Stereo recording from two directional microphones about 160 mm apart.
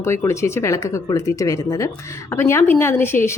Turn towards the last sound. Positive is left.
turn(degrees=15)  # may be behind; listen again after turning